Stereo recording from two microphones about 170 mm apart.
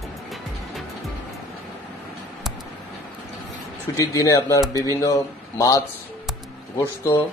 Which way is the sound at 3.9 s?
20° left (ahead or behind).